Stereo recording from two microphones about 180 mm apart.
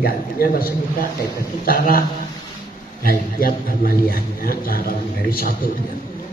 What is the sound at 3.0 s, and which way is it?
A man's voice, 55° left (ahead or behind).